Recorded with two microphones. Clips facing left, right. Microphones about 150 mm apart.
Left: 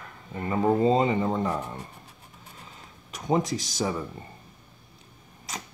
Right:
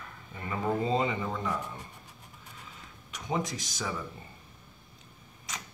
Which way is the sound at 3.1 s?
40° left (ahead or behind).